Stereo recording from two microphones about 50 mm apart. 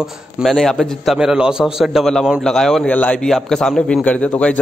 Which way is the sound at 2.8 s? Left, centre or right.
Left.